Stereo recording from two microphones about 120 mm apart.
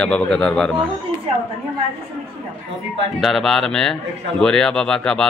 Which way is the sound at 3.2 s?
Centre (ahead or behind).